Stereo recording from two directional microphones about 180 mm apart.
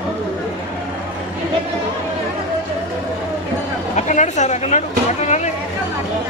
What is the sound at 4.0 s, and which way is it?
Speech, 40° left (ahead or behind).